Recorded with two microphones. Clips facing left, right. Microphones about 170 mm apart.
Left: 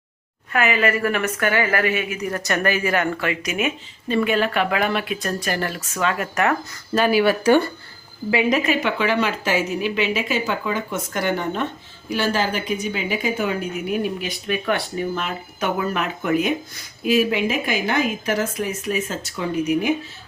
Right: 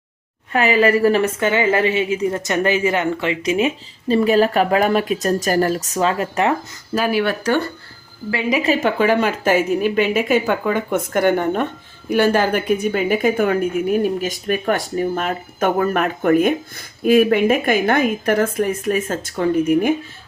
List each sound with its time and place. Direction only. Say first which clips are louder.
0.5 s a woman's voice: right 5 dB; 30° right (ahead or behind)
6.9 s speech: left 1 dB; centre (ahead or behind)
8.6 s speech: right 4 dB; 40° right (ahead or behind)